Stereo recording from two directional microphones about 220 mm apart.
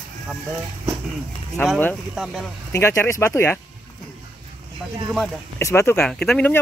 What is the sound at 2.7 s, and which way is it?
Speech, 10° left (ahead or behind).